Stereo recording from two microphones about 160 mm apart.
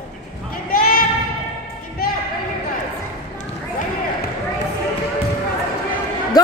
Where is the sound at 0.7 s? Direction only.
65° left (ahead or behind).